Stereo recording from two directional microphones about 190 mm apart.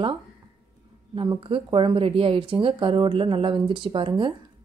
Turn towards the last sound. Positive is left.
turn(degrees=-25)  # may be behind; listen again after turning